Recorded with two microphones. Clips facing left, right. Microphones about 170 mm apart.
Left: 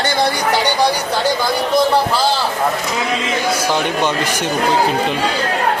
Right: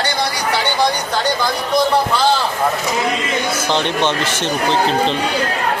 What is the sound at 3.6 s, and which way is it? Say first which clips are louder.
Speech: even; 10° left (ahead or behind).